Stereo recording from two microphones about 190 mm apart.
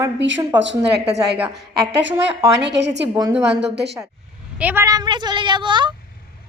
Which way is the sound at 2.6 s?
65° right (ahead or behind).